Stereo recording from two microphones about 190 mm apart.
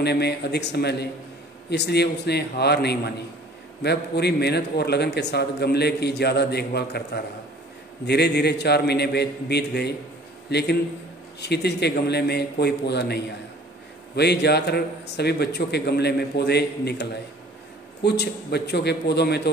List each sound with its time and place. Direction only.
0.0 s a man's voice: 60° left (ahead or behind)